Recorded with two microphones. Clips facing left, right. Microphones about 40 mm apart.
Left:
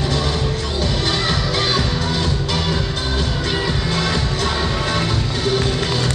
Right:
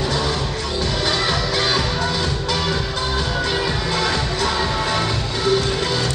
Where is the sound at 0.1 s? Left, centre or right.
Centre.